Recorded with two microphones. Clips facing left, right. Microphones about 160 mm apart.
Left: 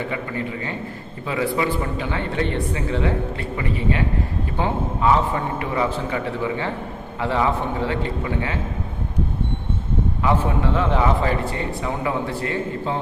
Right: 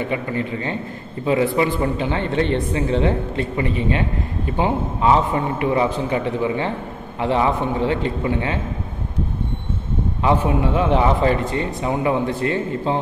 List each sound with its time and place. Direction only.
1.2 s a man's voice: 25° right (ahead or behind)
10.4 s a man's voice: 15° right (ahead or behind)